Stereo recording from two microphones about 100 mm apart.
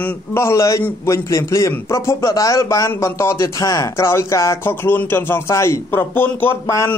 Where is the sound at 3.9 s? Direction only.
25° left (ahead or behind).